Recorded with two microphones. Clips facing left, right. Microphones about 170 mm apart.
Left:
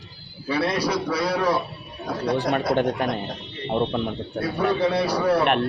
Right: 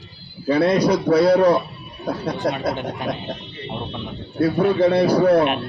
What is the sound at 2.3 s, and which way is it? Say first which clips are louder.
Speech: left 4 dB; 60° left (ahead or behind).